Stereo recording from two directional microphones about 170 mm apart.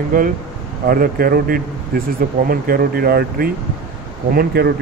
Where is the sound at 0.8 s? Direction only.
60° right (ahead or behind).